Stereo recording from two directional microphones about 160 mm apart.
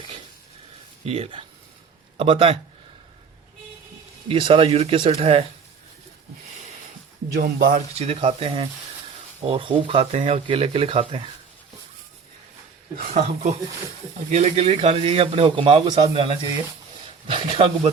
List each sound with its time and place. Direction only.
1.0 s a man's voice: 40° right (ahead or behind)
4.3 s speech: 35° right (ahead or behind)
7.3 s speech: 65° right (ahead or behind)
7.8 s speech: 40° right (ahead or behind)
13.0 s speech: 50° right (ahead or behind); by 17.7 s 30° right (ahead or behind)